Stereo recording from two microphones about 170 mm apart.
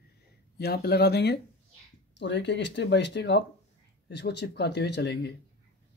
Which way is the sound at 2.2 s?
90° left.